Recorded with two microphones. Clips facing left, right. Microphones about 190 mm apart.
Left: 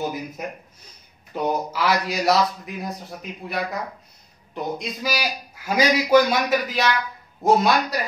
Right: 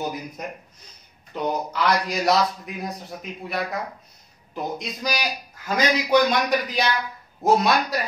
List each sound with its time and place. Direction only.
0.0 s a man's voice: centre (ahead or behind)